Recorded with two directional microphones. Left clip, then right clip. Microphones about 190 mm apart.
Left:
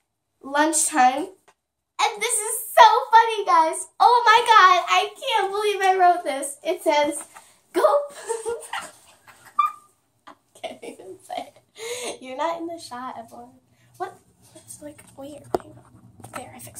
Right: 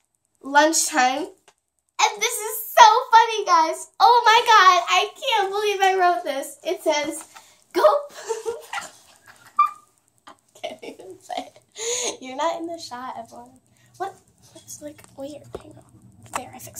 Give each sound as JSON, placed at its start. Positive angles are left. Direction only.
{"t": 0.4, "sound": "a woman's voice", "side_deg": -10}
{"t": 10.2, "sound": "a sound", "side_deg": -10}
{"t": 14.0, "sound": "a woman's voice", "side_deg": -15}